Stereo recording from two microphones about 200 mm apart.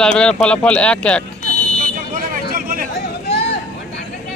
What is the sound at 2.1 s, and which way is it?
Vehicle, 45° right (ahead or behind).